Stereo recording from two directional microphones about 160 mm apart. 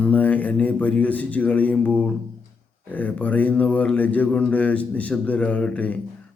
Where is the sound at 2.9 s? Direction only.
10° left (ahead or behind).